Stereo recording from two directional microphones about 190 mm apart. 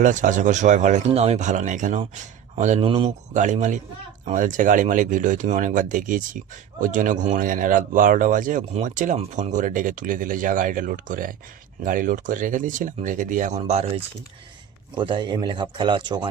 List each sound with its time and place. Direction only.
0.0 s speech: 40° right (ahead or behind); by 16.3 s 25° right (ahead or behind)